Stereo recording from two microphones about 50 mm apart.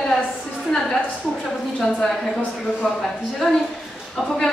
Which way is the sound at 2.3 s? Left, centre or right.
Centre.